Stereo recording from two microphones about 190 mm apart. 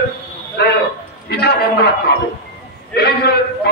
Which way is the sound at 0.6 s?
60° left (ahead or behind).